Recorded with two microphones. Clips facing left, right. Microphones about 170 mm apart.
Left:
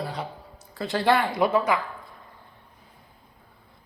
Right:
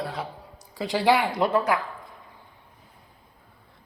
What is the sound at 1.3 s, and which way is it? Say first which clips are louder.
Speech: left 1 dB; 10° left (ahead or behind).